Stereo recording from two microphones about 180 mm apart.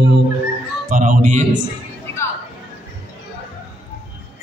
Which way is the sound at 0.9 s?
50° right (ahead or behind).